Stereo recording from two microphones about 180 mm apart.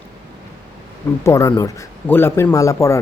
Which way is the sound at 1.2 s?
15° left (ahead or behind).